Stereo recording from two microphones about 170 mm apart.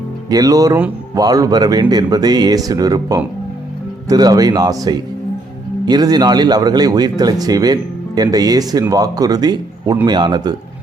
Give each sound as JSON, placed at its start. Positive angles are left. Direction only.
{"t": 0.3, "sound": "speech", "side_deg": -20}